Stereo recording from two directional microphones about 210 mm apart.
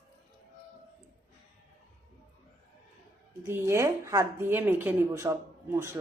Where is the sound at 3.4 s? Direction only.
10° right (ahead or behind).